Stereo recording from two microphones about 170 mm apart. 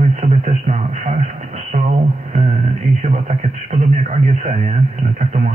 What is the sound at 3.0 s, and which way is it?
Radio, 45° right (ahead or behind).